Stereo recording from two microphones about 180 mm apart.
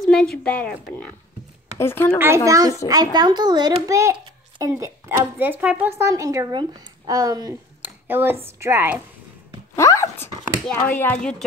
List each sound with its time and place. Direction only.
0.0 s a sound: 5° left (ahead or behind)
0.4 s speech: 5° left (ahead or behind)
2.1 s a child's voice: 15° right (ahead or behind)
9.8 s speech: 15° left (ahead or behind)